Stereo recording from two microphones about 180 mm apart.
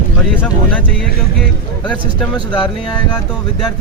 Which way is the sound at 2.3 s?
25° left (ahead or behind).